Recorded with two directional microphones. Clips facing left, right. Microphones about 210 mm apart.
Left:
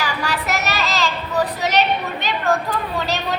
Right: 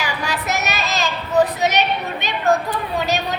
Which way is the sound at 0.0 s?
20° right (ahead or behind).